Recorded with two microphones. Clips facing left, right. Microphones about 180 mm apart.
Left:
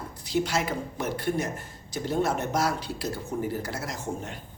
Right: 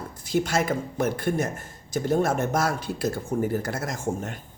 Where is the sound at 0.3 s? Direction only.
50° right (ahead or behind).